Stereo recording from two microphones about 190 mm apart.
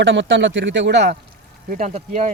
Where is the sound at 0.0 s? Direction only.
75° right (ahead or behind).